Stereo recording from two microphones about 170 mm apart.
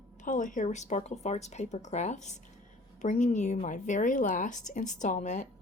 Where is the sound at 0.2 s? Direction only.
50° left (ahead or behind).